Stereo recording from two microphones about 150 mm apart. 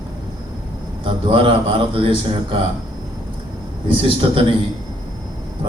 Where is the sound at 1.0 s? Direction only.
35° right (ahead or behind).